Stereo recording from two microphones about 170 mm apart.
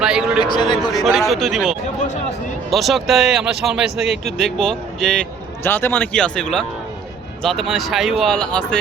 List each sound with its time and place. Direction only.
0.0 s a sound: 5° right (ahead or behind)
0.4 s a man's voice: 25° left (ahead or behind)
0.9 s speech: centre (ahead or behind)